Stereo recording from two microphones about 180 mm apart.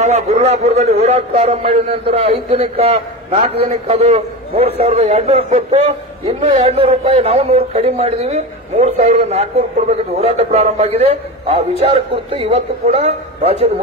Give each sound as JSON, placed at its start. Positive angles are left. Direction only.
{"t": 0.0, "sound": "a man's voice", "side_deg": -40}